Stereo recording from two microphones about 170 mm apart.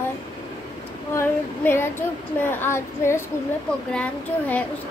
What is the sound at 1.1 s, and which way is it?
Child singing, 15° left (ahead or behind).